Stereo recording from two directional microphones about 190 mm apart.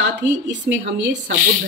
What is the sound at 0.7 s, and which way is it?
Speech, 60° right (ahead or behind).